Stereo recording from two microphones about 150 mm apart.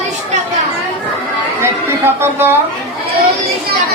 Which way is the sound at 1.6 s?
15° right (ahead or behind).